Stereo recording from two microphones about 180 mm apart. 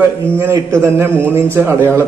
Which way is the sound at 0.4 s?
15° right (ahead or behind).